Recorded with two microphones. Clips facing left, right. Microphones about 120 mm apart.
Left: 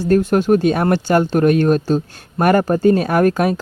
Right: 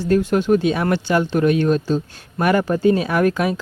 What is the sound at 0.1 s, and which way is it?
Speech, 45° left (ahead or behind).